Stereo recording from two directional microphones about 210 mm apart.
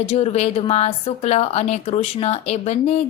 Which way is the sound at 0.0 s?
30° left (ahead or behind).